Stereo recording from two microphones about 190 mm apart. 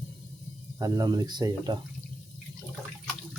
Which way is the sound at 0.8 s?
15° right (ahead or behind).